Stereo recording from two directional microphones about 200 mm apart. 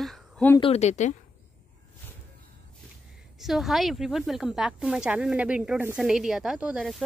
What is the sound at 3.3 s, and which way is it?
Speech, centre (ahead or behind).